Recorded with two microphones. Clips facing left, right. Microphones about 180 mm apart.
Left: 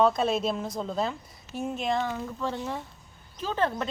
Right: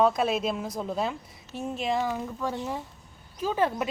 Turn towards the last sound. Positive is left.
turn(degrees=-10)  # may be behind; listen again after turning